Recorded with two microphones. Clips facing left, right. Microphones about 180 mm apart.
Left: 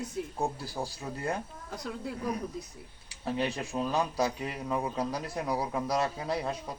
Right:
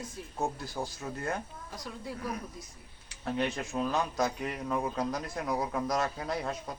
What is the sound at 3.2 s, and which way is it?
Speech, 5° left (ahead or behind).